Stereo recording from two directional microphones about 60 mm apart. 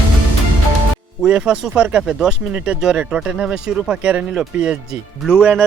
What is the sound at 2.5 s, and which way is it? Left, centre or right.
Speech, right.